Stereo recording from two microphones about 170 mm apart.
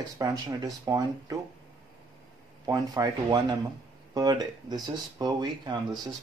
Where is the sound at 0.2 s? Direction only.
20° right (ahead or behind).